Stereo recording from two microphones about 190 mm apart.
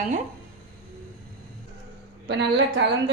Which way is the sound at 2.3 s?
65° right (ahead or behind).